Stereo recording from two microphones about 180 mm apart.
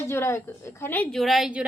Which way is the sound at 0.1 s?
15° left (ahead or behind).